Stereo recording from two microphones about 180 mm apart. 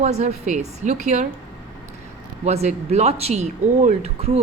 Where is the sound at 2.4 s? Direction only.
35° right (ahead or behind).